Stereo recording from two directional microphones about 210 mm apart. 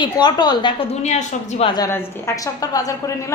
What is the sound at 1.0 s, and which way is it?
Speech, 30° left (ahead or behind).